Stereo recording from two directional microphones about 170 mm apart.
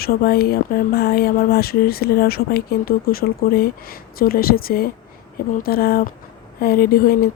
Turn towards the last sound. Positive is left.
turn(degrees=60)  # may be behind; listen again after turning